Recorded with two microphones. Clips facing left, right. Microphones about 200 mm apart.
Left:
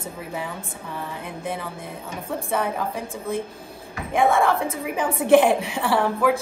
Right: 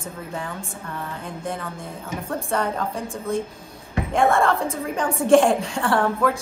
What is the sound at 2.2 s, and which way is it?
Speech, 5° left (ahead or behind).